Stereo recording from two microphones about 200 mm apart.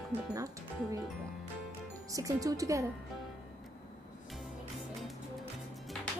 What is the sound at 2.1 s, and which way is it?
Speech, 15° right (ahead or behind).